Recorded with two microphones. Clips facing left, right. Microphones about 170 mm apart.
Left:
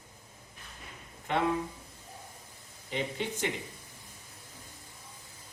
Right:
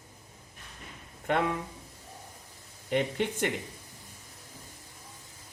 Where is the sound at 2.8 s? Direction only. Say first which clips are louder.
Right 6 dB; 60° right (ahead or behind).